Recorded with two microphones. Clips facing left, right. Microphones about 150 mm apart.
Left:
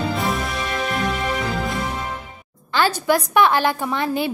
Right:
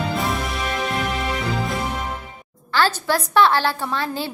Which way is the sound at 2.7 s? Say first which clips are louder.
Even; 20° left (ahead or behind).